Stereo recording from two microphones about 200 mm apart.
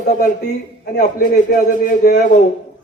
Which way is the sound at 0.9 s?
45° left (ahead or behind).